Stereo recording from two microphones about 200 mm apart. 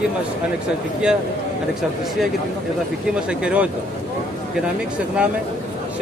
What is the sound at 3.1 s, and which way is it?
Speech, 5° right (ahead or behind).